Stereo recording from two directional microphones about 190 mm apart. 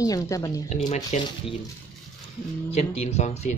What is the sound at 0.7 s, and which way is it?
Speech, 35° left (ahead or behind).